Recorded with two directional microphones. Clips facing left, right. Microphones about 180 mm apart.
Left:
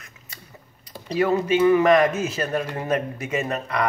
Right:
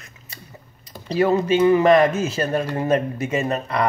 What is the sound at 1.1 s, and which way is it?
Speech, 30° right (ahead or behind).